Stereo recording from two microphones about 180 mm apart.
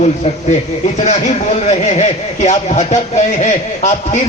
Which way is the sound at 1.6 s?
40° left (ahead or behind).